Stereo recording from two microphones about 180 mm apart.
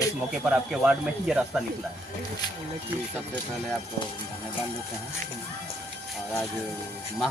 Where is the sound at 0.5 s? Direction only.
5° right (ahead or behind).